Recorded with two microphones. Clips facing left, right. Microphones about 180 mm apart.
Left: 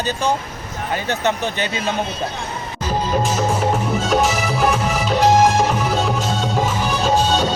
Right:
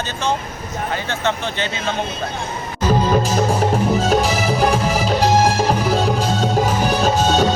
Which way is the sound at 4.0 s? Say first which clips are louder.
Right 1 dB; 35° right (ahead or behind).